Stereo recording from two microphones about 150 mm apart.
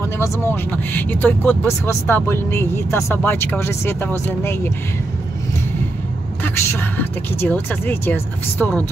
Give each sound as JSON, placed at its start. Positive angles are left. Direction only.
{"t": 0.2, "sound": "speech", "side_deg": 10}
{"t": 6.4, "sound": "speech", "side_deg": 15}